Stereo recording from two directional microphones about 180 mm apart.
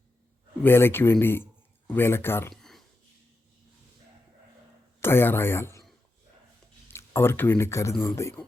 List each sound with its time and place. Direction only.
0.6 s speech: 10° left (ahead or behind)
2.5 s a sound: centre (ahead or behind)
4.9 s speech: 15° left (ahead or behind)
6.9 s speech: 15° left (ahead or behind)